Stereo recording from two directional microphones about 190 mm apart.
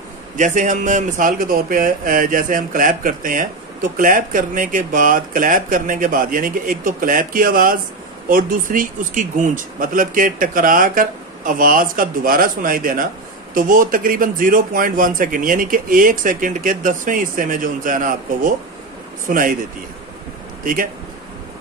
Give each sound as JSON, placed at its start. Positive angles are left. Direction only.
{"t": 0.4, "sound": "a man's voice", "side_deg": -40}
{"t": 20.6, "sound": "a man's voice", "side_deg": -45}